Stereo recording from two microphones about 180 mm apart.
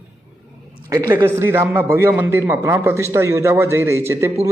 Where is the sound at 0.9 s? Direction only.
15° right (ahead or behind).